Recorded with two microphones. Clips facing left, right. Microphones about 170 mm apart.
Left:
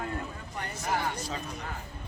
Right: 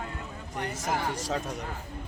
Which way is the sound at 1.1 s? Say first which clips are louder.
Right 5 dB; 90° right.